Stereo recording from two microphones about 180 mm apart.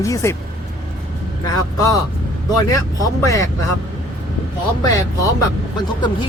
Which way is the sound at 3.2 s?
20° left (ahead or behind).